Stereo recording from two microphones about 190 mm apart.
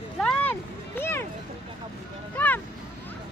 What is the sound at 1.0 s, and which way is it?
Speech, 10° left (ahead or behind).